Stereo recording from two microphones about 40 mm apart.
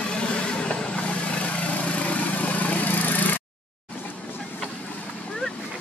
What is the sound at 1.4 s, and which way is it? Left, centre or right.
Vehicle, left.